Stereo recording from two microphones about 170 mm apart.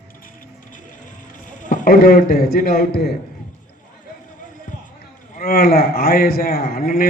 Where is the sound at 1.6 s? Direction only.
55° left (ahead or behind).